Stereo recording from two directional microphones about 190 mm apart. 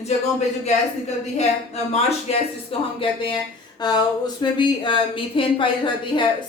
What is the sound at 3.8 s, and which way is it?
Speech, 20° left (ahead or behind).